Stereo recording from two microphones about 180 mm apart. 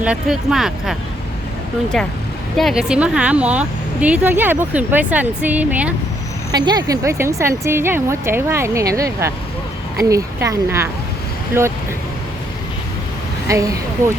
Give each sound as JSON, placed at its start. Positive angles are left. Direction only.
{"t": 0.0, "sound": "speech", "side_deg": -5}
{"t": 2.6, "sound": "speech", "side_deg": 0}
{"t": 6.5, "sound": "speech", "side_deg": -20}
{"t": 13.5, "sound": "speech", "side_deg": -20}